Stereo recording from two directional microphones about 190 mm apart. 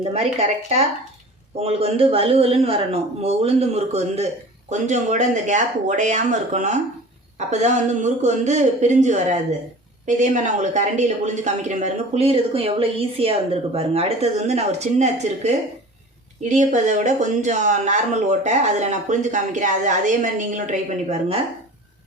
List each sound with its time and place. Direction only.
0.0 s speech: 35° right (ahead or behind)